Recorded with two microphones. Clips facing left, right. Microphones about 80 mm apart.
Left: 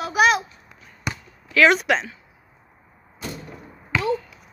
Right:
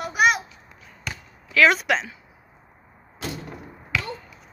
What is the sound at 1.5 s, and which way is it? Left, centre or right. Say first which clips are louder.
Speech: left 2 dB; centre.